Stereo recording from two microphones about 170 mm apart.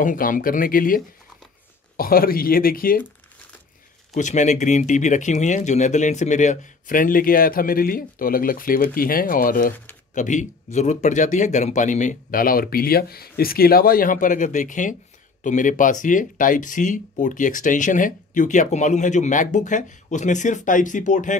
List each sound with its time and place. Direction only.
0.0 s speech: 50° left (ahead or behind)
4.1 s speech: 45° left (ahead or behind)
10.1 s speech: 45° left (ahead or behind)